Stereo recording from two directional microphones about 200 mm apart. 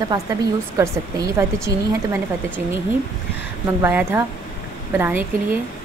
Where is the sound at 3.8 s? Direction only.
10° right (ahead or behind).